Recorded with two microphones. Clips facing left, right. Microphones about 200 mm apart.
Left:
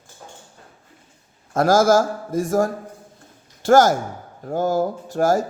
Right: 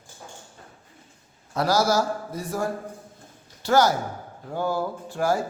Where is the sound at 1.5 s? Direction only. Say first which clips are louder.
Left 7 dB; 50° left (ahead or behind).